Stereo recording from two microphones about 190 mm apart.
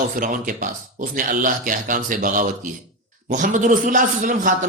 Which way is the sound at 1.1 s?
45° right (ahead or behind).